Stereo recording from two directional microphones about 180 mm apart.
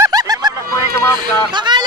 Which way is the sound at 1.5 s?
25° right (ahead or behind).